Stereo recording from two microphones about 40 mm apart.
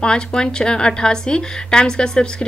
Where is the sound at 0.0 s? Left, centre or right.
Left.